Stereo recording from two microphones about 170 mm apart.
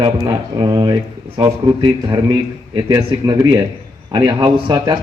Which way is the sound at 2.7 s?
25° right (ahead or behind).